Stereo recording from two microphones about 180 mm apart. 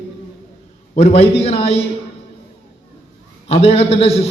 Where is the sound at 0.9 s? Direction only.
35° left (ahead or behind).